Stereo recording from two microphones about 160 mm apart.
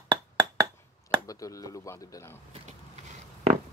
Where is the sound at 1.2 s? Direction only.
20° left (ahead or behind).